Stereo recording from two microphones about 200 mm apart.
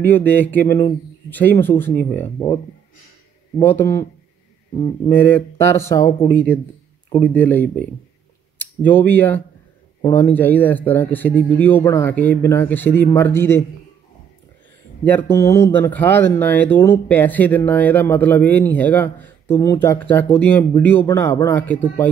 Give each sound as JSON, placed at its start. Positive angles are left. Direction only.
{"t": 0.0, "sound": "speech", "side_deg": 10}
{"t": 3.5, "sound": "speech", "side_deg": 10}
{"t": 4.7, "sound": "speech", "side_deg": 25}
{"t": 5.1, "sound": "speech", "side_deg": 10}
{"t": 15.0, "sound": "speech", "side_deg": 10}